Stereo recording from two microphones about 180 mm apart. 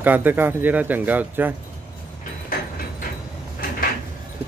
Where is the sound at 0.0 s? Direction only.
10° right (ahead or behind).